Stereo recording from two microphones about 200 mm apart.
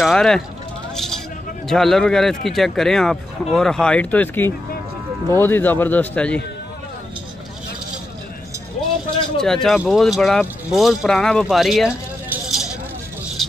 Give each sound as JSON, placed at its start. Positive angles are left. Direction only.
{"t": 0.0, "sound": "a sound", "side_deg": 0}
{"t": 1.7, "sound": "a man's voice", "side_deg": 0}
{"t": 8.8, "sound": "vehicle", "side_deg": 35}
{"t": 9.4, "sound": "speech", "side_deg": 0}
{"t": 13.4, "sound": "vehicle", "side_deg": 0}